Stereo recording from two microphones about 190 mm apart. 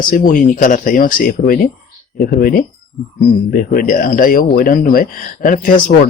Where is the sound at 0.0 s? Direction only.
45° left (ahead or behind).